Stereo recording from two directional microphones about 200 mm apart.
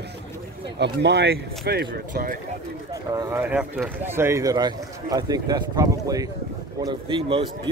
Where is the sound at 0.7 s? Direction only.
60° right (ahead or behind).